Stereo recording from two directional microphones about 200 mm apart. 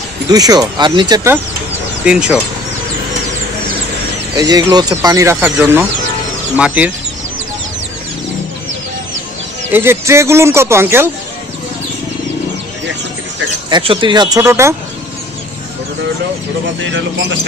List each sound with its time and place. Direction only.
0.3 s speech: 20° right (ahead or behind)
2.0 s speech: 5° right (ahead or behind)
4.4 s speech: 20° right (ahead or behind)
9.7 s speech: 10° right (ahead or behind)
13.7 s speech: 25° right (ahead or behind)